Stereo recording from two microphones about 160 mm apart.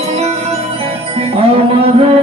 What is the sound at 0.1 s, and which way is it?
Music, 40° right (ahead or behind).